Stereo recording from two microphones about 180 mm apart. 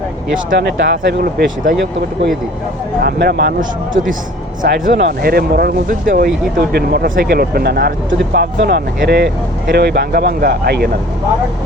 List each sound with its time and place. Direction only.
0.5 s speech: 70° right (ahead or behind)
3.0 s speech: 60° right (ahead or behind); by 4.0 s 75° right (ahead or behind)
4.6 s speech: 65° right (ahead or behind)